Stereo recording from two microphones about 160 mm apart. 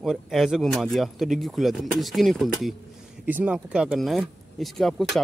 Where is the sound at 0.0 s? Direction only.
Centre (ahead or behind).